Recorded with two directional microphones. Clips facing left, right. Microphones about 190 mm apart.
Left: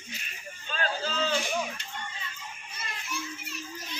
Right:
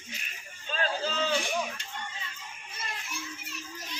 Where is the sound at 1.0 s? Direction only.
15° right (ahead or behind).